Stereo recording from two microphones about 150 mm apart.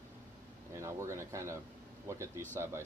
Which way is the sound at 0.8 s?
20° right (ahead or behind).